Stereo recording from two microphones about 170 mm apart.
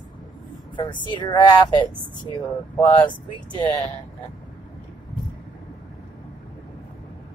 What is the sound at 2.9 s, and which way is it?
Speech, 30° left (ahead or behind).